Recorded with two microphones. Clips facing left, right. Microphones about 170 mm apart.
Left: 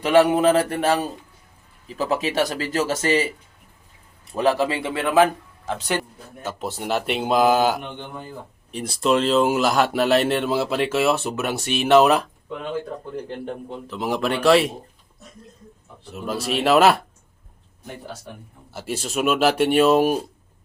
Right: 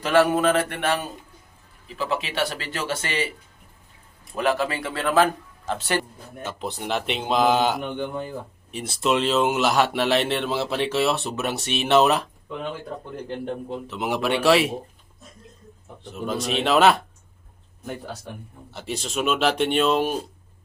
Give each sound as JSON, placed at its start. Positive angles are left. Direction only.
{"t": 0.0, "sound": "a man's voice", "side_deg": 20}
{"t": 0.4, "sound": "speech", "side_deg": 35}
{"t": 4.4, "sound": "a man's voice", "side_deg": 30}
{"t": 4.9, "sound": "speech", "side_deg": 15}
{"t": 13.8, "sound": "speech", "side_deg": -5}
{"t": 16.1, "sound": "speech", "side_deg": 0}
{"t": 18.7, "sound": "speech", "side_deg": 5}